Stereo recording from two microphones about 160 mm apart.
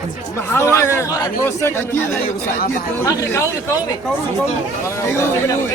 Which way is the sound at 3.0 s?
20° left (ahead or behind).